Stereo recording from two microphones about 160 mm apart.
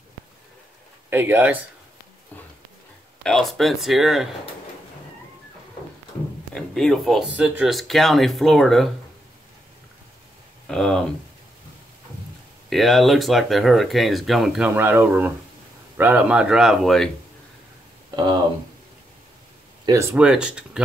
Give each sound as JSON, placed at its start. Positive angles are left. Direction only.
{"t": 1.1, "sound": "speech", "side_deg": -10}
{"t": 3.3, "sound": "speech", "side_deg": 0}
{"t": 6.5, "sound": "speech", "side_deg": 5}
{"t": 10.7, "sound": "speech", "side_deg": 5}
{"t": 12.6, "sound": "speech", "side_deg": 0}
{"t": 14.7, "sound": "speech", "side_deg": -15}
{"t": 19.9, "sound": "speech", "side_deg": -15}
{"t": 20.2, "sound": "speech", "side_deg": -5}